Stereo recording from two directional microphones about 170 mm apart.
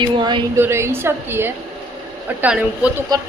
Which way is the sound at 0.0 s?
30° right (ahead or behind).